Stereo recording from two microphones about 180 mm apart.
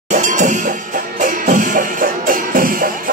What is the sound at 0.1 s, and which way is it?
Music, 45° right (ahead or behind).